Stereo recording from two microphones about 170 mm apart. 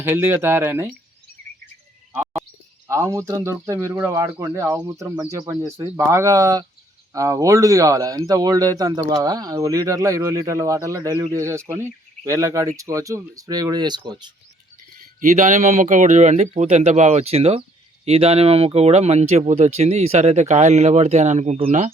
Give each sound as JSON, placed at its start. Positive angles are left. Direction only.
{"t": 0.0, "sound": "speech", "side_deg": -15}
{"t": 2.8, "sound": "speech", "side_deg": -15}
{"t": 15.2, "sound": "speech", "side_deg": -45}